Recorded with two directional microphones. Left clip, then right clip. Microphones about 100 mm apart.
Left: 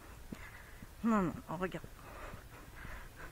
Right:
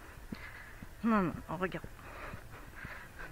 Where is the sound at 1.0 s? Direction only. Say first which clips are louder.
Right 2 dB; 20° left (ahead or behind).